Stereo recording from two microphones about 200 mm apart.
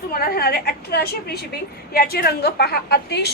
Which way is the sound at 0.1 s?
45° left (ahead or behind).